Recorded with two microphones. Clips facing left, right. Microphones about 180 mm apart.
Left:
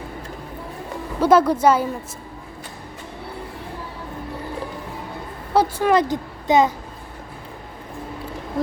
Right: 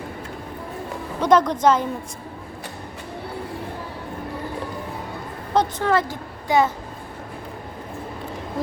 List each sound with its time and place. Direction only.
1.2 s a woman's voice: 5° left (ahead or behind)
5.5 s a woman's voice: 15° left (ahead or behind)